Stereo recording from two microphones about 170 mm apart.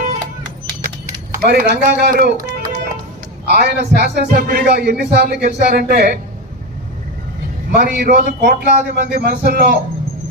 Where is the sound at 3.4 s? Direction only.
70° right (ahead or behind).